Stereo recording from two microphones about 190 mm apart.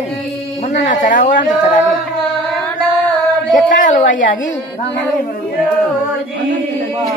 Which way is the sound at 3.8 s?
45° left (ahead or behind).